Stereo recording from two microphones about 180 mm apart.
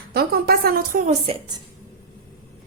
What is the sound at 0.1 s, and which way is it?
A woman's voice, 60° right (ahead or behind).